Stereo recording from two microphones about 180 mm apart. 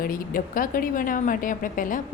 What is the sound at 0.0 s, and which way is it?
A woman's voice, 50° left (ahead or behind).